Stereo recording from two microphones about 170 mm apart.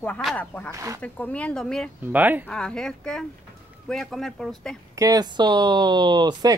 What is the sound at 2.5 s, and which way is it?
Speech, 5° left (ahead or behind).